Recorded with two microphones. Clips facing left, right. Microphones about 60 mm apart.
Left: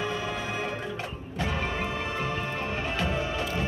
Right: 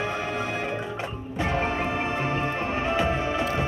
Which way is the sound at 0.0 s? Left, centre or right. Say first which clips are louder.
Right 3 dB; right.